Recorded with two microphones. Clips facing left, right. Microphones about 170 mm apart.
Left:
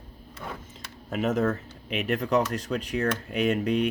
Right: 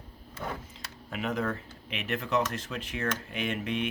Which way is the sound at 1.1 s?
45° left (ahead or behind).